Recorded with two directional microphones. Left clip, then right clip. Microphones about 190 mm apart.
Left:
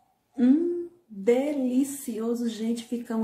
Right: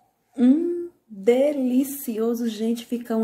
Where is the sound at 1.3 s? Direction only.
25° right (ahead or behind).